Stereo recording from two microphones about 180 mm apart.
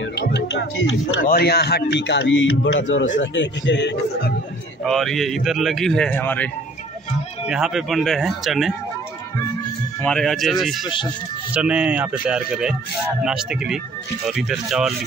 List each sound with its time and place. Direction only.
0.2 s speech: 70° left (ahead or behind)
1.2 s a man's voice: 55° left (ahead or behind); by 4.3 s 75° left (ahead or behind)
4.8 s speech: centre (ahead or behind)
7.4 s speech: 5° right (ahead or behind)
10.0 s speech: 5° left (ahead or behind)